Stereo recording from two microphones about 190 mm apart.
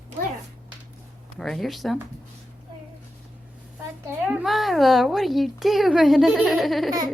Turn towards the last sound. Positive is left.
turn(degrees=0)  # may be behind; listen again after turning